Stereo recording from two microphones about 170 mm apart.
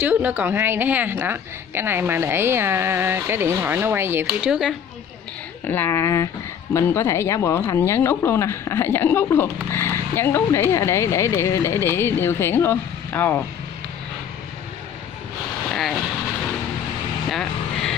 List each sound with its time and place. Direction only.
0.0 s a woman's voice: 10° right (ahead or behind)
5.7 s a woman's voice: 15° left (ahead or behind)
15.7 s speech: centre (ahead or behind)
17.3 s vehicle: 5° left (ahead or behind)